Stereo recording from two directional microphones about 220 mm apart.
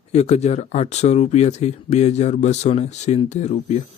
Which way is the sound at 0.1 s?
30° left (ahead or behind).